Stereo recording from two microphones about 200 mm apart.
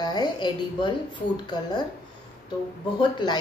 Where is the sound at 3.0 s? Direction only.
20° left (ahead or behind).